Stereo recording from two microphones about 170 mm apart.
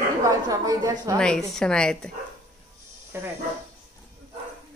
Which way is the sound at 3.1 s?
15° right (ahead or behind).